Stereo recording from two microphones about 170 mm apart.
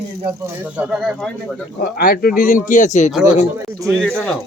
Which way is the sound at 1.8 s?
60° left (ahead or behind).